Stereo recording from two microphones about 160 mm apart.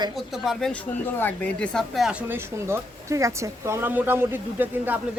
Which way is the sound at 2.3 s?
15° right (ahead or behind).